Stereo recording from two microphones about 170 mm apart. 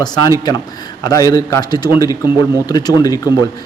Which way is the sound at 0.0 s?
20° left (ahead or behind).